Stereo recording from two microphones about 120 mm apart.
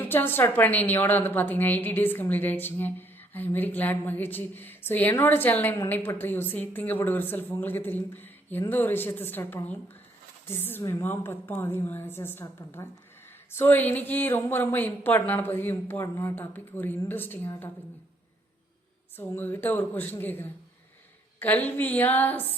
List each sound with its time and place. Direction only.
0.0 s a woman's voice: 15° left (ahead or behind)
19.1 s speech: 15° left (ahead or behind)